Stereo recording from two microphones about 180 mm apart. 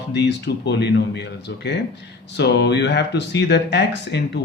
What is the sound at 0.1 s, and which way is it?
Speech, 70° left (ahead or behind).